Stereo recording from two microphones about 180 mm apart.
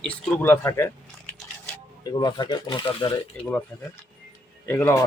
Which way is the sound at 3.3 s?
5° left (ahead or behind).